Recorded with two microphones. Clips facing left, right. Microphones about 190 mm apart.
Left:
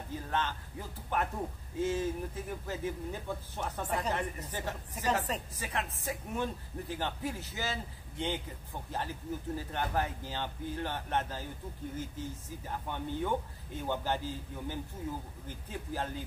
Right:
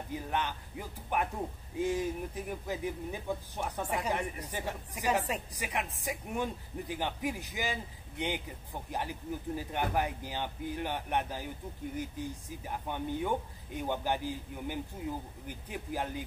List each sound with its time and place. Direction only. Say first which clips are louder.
0.1 s speech: even; 15° right (ahead or behind)